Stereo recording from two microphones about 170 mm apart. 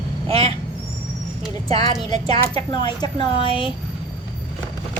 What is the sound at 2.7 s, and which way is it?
Speech, 25° left (ahead or behind).